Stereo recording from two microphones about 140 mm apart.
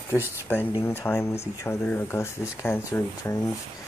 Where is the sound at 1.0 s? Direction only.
20° left (ahead or behind).